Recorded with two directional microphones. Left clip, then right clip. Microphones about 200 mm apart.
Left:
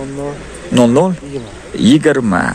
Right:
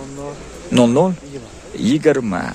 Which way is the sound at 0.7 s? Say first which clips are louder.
Left 3 dB; 10° right (ahead or behind).